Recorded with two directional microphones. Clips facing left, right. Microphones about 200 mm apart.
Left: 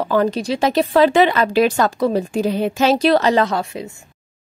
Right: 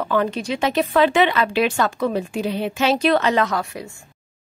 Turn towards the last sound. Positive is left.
turn(degrees=25)  # may be behind; listen again after turning